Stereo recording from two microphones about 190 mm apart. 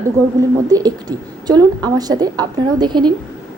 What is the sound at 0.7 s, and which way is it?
A woman's voice, 20° right (ahead or behind).